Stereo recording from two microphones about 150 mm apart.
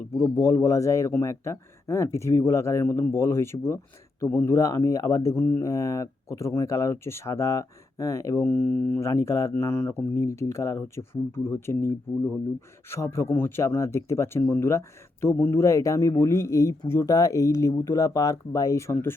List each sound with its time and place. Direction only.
0.2 s speech: 20° left (ahead or behind)